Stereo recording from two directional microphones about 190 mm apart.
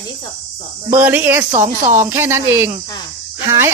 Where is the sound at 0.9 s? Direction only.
10° right (ahead or behind).